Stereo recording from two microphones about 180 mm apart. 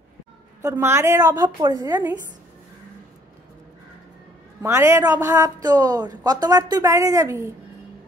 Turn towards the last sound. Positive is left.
turn(degrees=-15)  # may be behind; listen again after turning